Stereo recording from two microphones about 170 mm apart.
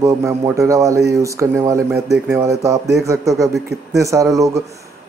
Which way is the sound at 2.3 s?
20° right (ahead or behind).